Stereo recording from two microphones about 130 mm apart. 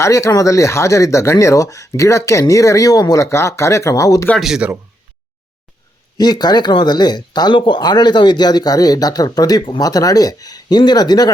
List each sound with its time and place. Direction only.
0.0 s speech: 25° left (ahead or behind)
4.4 s speech: 5° right (ahead or behind)
6.1 s speech: 30° left (ahead or behind)